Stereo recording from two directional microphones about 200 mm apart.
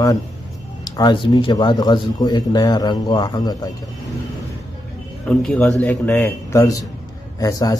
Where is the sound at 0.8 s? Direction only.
20° left (ahead or behind).